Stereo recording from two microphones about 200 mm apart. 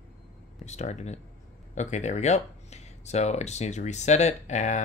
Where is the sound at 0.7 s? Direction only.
35° left (ahead or behind).